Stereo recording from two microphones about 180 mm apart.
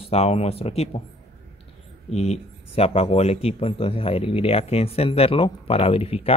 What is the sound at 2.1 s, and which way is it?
Speech, 35° left (ahead or behind).